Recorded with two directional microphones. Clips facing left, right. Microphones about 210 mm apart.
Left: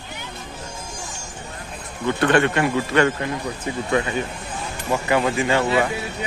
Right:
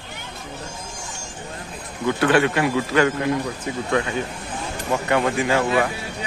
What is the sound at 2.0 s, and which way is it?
Speech, 5° right (ahead or behind).